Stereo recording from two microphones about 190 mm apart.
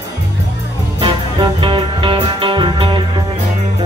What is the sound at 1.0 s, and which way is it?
Music, 25° right (ahead or behind).